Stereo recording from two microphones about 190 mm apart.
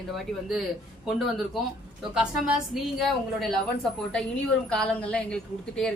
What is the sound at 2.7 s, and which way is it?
Speech, centre (ahead or behind).